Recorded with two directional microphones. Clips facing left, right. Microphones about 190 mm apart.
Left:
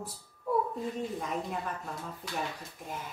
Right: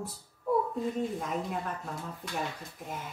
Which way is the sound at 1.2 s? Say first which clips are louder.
Right 1 dB; centre (ahead or behind).